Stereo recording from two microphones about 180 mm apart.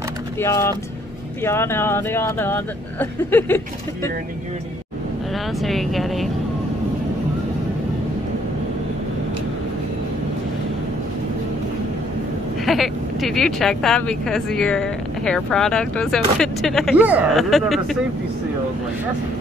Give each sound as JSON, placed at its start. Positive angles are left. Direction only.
{"t": 0.4, "sound": "speech", "side_deg": 15}
{"t": 5.6, "sound": "speech", "side_deg": 0}
{"t": 12.6, "sound": "speech", "side_deg": 0}
{"t": 16.9, "sound": "speech", "side_deg": -10}